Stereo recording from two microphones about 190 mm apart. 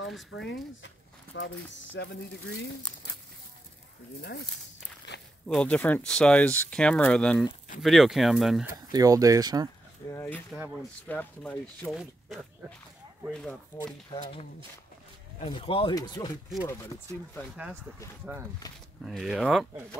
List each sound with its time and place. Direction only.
0.3 s speech: 90° left
0.8 s speech: 70° left (ahead or behind)
4.2 s speech: 60° left (ahead or behind)
5.1 s a sound: 65° left (ahead or behind)
5.5 s speech: 5° left (ahead or behind)
8.9 s speech: 20° right (ahead or behind)
10.0 s speech: 15° left (ahead or behind)
15.4 s speech: 30° left (ahead or behind)
19.0 s speech: centre (ahead or behind)